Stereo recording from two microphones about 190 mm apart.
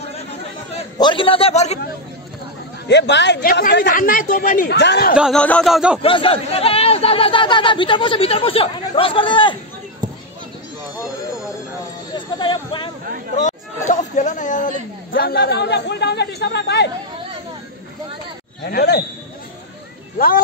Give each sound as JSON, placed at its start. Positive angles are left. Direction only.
{"t": 0.9, "sound": "speech", "side_deg": 25}
{"t": 2.9, "sound": "a man's voice", "side_deg": 65}
{"t": 3.6, "sound": "speech", "side_deg": 50}
{"t": 4.7, "sound": "a man's voice", "side_deg": 60}
{"t": 5.1, "sound": "speech", "side_deg": 0}
{"t": 6.0, "sound": "speech", "side_deg": 30}
{"t": 12.4, "sound": "a sound", "side_deg": 25}
{"t": 13.3, "sound": "chatter", "side_deg": 40}
{"t": 13.8, "sound": "a man's voice", "side_deg": 40}
{"t": 18.7, "sound": "a man's voice", "side_deg": 55}